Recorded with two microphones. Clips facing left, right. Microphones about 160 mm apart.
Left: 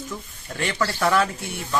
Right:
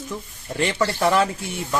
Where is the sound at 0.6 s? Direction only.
25° right (ahead or behind).